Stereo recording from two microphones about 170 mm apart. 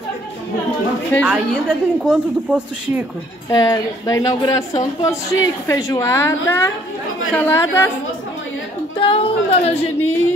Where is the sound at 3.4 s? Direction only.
20° left (ahead or behind).